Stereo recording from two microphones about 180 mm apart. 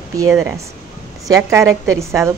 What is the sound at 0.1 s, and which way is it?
A woman's voice, 20° right (ahead or behind).